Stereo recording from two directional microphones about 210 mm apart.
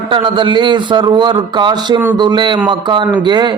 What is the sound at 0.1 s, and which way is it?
A man's voice, 25° right (ahead or behind).